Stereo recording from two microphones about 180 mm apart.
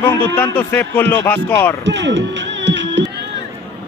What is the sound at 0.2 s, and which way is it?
Speech, 10° left (ahead or behind).